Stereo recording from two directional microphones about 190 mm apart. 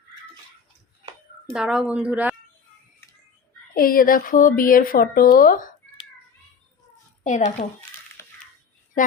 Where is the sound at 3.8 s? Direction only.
50° left (ahead or behind).